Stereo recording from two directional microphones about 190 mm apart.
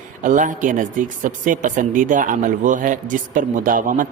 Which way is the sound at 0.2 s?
45° right (ahead or behind).